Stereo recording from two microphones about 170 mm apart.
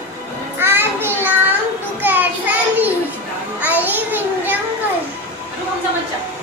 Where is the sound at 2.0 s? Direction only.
10° right (ahead or behind).